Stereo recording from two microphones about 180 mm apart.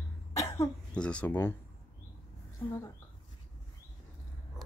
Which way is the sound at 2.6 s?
15° left (ahead or behind).